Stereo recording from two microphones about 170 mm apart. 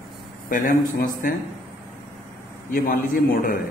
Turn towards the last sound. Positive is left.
turn(degrees=55)  # may be behind; listen again after turning